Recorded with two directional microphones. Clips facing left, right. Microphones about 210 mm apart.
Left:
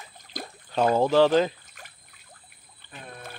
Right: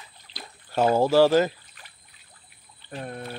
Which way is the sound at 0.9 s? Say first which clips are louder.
Right 1 dB; 10° right (ahead or behind).